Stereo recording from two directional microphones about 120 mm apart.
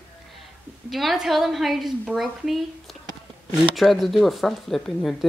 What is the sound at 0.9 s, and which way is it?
A woman's voice, centre (ahead or behind).